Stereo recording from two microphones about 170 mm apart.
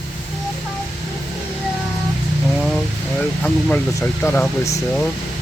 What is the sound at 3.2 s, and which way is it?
Speech, 5° left (ahead or behind).